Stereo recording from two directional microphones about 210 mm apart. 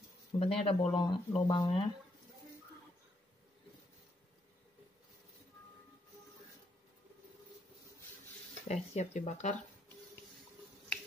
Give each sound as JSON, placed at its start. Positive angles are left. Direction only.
{"t": 0.4, "sound": "speech", "side_deg": 30}
{"t": 8.6, "sound": "speech", "side_deg": 30}